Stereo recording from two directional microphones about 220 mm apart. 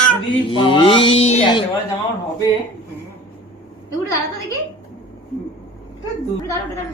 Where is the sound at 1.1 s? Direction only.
65° left (ahead or behind).